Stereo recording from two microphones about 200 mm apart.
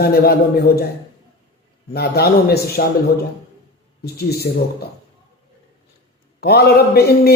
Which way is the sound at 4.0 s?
50° left (ahead or behind).